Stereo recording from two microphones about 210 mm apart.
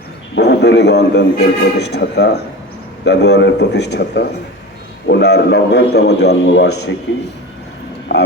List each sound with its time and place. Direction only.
0.3 s a man's voice: 55° left (ahead or behind)
8.1 s speech: 55° left (ahead or behind)